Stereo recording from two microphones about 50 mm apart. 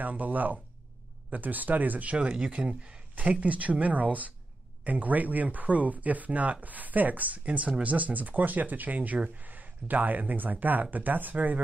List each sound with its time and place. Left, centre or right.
0.0 s speech: right
3.2 s speech: right